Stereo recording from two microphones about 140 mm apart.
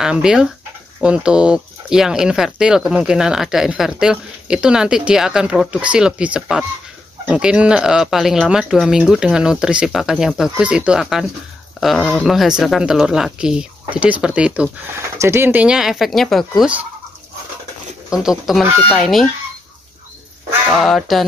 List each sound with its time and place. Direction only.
0.0 s speech: 5° right (ahead or behind)
15.0 s speech: 20° right (ahead or behind)
18.1 s speech: 5° right (ahead or behind)
20.7 s speech: centre (ahead or behind)